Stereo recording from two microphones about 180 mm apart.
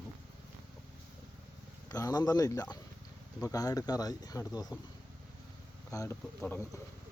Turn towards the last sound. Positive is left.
turn(degrees=10)  # may be behind; listen again after turning